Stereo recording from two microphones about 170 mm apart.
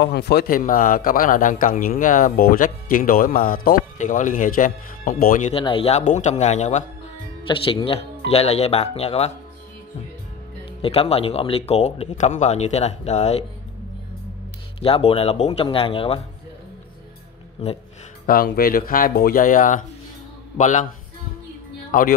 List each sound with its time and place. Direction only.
0.0 s a man's voice: 80° left; by 5.5 s 55° left (ahead or behind)
5.5 s speech: 30° left (ahead or behind)
10.8 s speech: 35° left (ahead or behind)
14.8 s speech: 35° left (ahead or behind)
18.2 s a man's voice: 60° left (ahead or behind)